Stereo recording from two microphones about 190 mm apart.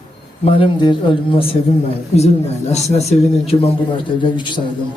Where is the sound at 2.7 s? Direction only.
35° left (ahead or behind).